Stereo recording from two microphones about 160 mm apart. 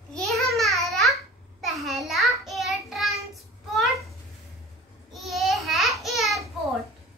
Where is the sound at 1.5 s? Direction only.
Centre (ahead or behind).